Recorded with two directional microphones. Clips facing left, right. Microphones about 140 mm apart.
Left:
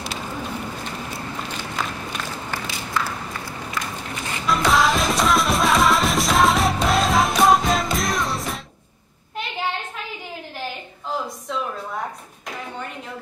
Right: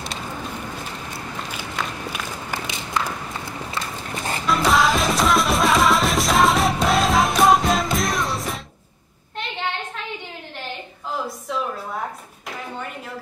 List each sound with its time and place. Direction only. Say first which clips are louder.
1.8 s walk: even; centre (ahead or behind)
2.6 s walk: right 1 dB; 20° right (ahead or behind)
3.7 s walk: left 1 dB; 30° right (ahead or behind)
4.5 s music: even; centre (ahead or behind)